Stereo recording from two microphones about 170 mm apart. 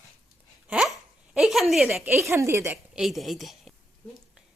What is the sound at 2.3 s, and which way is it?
Speech, 15° right (ahead or behind).